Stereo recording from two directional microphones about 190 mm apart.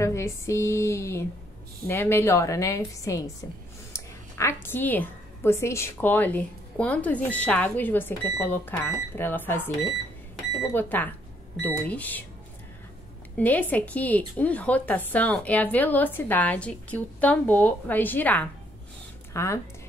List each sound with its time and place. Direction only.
0.0 s a woman's voice: 15° left (ahead or behind)
10.7 s a woman's voice: 10° left (ahead or behind)
13.4 s a woman's voice: 10° left (ahead or behind)